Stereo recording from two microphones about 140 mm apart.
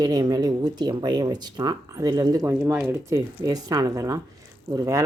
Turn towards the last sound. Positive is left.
turn(degrees=-25)  # may be behind; listen again after turning